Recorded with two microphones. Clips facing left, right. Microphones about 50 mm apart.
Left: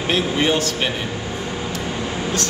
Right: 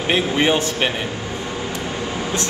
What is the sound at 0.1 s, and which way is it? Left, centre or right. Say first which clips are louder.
Speech: right 1 dB; centre.